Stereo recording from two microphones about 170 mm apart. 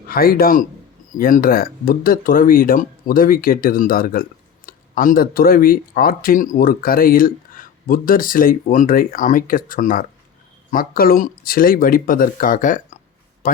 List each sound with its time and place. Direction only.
0.1 s speech: 60° left (ahead or behind)